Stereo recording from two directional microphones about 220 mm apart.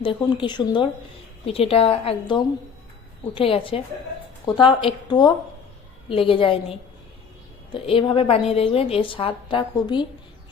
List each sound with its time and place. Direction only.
0.0 s a woman's voice: 20° left (ahead or behind)